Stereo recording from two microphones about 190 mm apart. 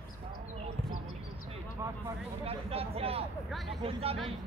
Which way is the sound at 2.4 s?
30° right (ahead or behind).